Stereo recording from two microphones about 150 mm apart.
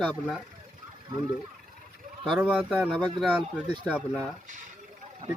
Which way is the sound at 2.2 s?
Centre (ahead or behind).